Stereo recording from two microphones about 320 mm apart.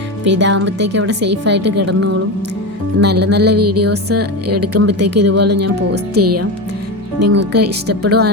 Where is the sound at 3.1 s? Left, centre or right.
Right.